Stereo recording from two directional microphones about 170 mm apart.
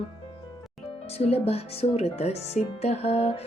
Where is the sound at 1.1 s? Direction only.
35° left (ahead or behind).